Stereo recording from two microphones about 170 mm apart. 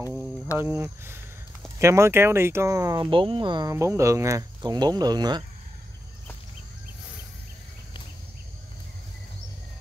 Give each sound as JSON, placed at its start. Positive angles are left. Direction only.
{"t": 0.6, "sound": "speech", "side_deg": -10}
{"t": 3.7, "sound": "speech", "side_deg": -15}